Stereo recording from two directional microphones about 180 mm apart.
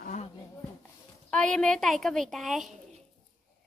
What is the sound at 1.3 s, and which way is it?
A child's voice, 5° left (ahead or behind).